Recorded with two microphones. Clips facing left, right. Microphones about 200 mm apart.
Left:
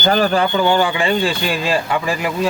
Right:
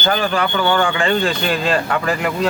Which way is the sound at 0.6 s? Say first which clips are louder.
Left 1 dB; 15° left (ahead or behind).